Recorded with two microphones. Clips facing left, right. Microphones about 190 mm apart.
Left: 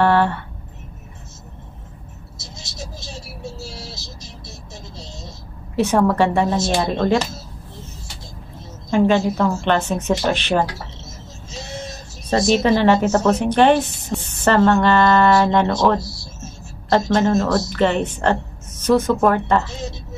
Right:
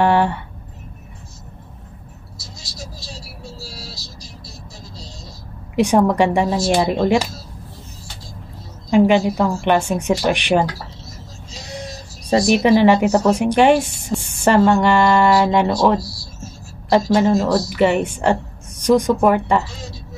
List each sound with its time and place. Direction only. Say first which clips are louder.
0.0 s a sound: even; 15° right (ahead or behind)
2.3 s vehicle: left 2 dB; 25° left (ahead or behind)
5.8 s speech: right 2 dB; 15° right (ahead or behind)
8.9 s speech: right 2 dB; 15° right (ahead or behind)
12.6 s speech: right 3 dB; 10° right (ahead or behind)
17.1 s speech: right 1 dB; 10° right (ahead or behind)
19.6 s a woman's voice: left 4 dB; 25° left (ahead or behind)